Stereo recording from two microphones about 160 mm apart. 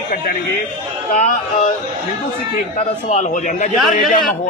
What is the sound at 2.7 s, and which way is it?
Speech, 45° left (ahead or behind).